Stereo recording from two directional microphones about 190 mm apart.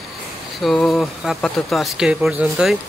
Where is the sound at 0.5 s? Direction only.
Centre (ahead or behind).